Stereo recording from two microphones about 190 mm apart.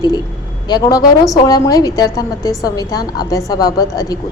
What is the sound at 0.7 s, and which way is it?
A woman's voice, 20° left (ahead or behind).